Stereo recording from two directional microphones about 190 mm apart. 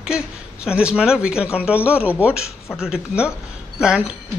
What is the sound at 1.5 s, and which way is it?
Speech, 5° right (ahead or behind).